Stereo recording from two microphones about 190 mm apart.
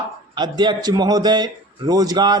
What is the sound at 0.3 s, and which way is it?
A man's voice, 20° right (ahead or behind).